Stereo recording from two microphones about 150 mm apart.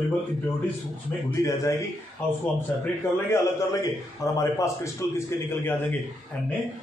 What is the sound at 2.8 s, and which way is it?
A man's voice, 20° left (ahead or behind).